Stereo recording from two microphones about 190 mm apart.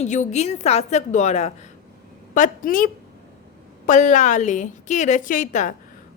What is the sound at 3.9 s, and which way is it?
A woman's voice, 40° left (ahead or behind).